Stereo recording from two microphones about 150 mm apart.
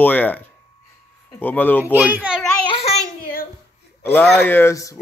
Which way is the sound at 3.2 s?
80° left.